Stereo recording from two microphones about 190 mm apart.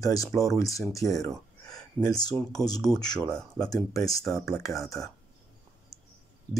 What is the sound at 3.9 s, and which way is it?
Speech, 15° left (ahead or behind).